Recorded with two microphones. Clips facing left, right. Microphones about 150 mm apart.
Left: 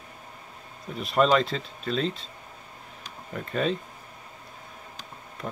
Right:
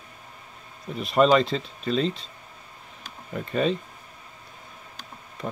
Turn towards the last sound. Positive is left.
turn(degrees=0)  # may be behind; listen again after turning